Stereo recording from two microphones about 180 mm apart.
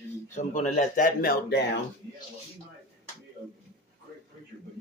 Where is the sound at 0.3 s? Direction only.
40° left (ahead or behind); by 1.6 s 55° left (ahead or behind).